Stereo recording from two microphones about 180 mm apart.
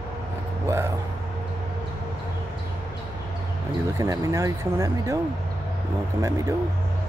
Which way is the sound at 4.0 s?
20° right (ahead or behind).